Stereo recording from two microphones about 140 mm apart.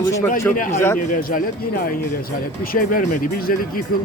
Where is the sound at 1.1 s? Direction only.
85° left.